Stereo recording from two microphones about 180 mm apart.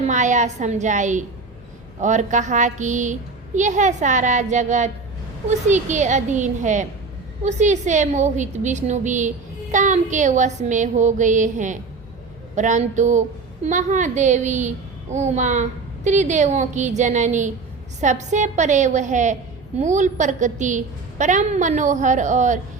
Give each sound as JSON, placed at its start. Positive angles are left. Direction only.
{"t": 0.1, "sound": "a woman's voice", "side_deg": -40}